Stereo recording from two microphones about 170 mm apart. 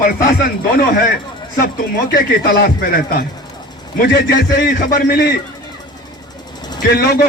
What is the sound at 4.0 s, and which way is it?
A man's voice, 70° left (ahead or behind).